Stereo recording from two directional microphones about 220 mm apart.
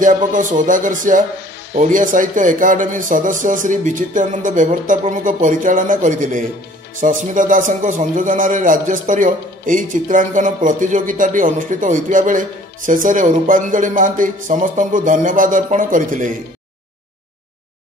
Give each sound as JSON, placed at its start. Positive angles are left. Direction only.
{"t": 0.0, "sound": "a man's voice", "side_deg": -35}